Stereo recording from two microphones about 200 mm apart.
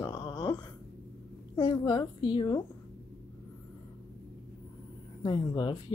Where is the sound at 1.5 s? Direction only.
20° left (ahead or behind).